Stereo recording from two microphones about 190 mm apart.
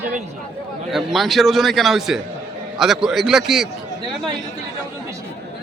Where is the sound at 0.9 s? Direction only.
Centre (ahead or behind).